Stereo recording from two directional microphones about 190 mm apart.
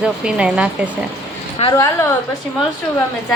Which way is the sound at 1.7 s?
15° left (ahead or behind).